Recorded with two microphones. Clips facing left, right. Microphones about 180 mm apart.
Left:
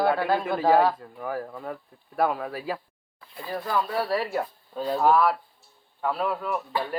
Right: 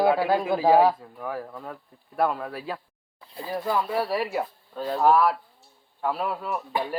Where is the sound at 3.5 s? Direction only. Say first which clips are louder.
Right 1 dB; 10° right (ahead or behind).